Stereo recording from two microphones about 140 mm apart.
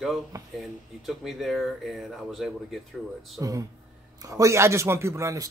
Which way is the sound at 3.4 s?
25° right (ahead or behind).